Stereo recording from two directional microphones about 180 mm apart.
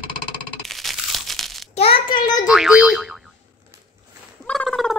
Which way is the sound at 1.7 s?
30° left (ahead or behind).